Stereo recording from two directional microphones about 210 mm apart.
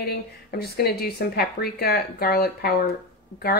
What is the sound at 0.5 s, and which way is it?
A woman's voice, 50° left (ahead or behind).